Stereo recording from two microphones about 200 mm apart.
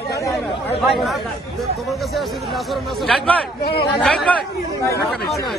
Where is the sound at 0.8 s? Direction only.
Centre (ahead or behind).